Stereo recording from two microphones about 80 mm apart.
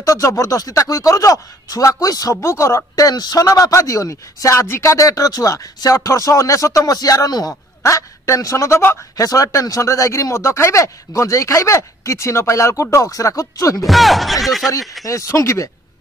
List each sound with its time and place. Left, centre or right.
0.0 s speech: left
2.4 s speech: left
3.1 s speech: left
7.8 s speech: left
9.1 s speech: left
13.8 s speech: centre
15.0 s speech: left